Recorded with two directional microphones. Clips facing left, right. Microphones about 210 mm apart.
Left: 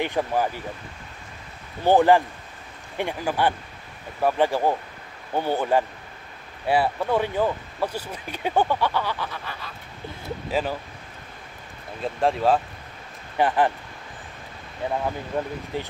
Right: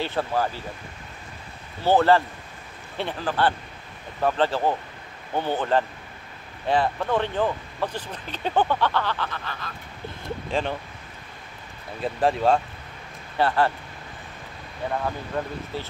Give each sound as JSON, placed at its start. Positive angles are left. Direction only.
{"t": 0.0, "sound": "speech", "side_deg": 15}
{"t": 1.9, "sound": "speech", "side_deg": 15}
{"t": 12.0, "sound": "speech", "side_deg": 0}
{"t": 13.4, "sound": "speech", "side_deg": 15}
{"t": 15.3, "sound": "speech", "side_deg": 10}